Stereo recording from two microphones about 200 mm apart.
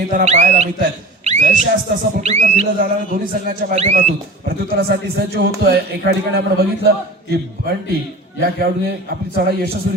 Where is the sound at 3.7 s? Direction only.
30° right (ahead or behind).